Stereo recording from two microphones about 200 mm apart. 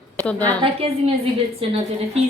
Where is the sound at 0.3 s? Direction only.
5° left (ahead or behind).